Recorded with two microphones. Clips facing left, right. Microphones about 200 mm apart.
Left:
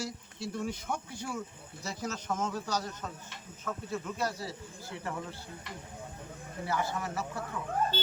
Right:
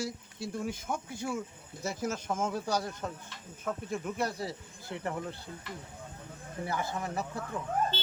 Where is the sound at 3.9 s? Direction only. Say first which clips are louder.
Even; 20° right (ahead or behind).